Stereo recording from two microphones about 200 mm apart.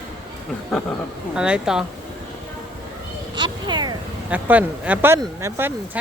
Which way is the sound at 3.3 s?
20° right (ahead or behind).